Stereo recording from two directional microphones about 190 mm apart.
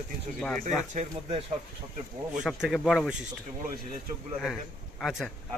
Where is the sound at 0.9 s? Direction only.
35° right (ahead or behind).